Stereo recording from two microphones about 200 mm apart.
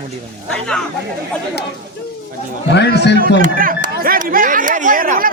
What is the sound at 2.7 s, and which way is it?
Speech, 55° left (ahead or behind).